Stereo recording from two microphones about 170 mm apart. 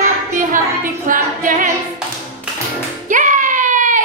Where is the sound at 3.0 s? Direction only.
50° right (ahead or behind).